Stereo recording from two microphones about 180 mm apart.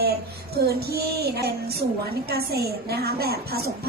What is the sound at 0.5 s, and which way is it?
A woman's voice, 60° right (ahead or behind).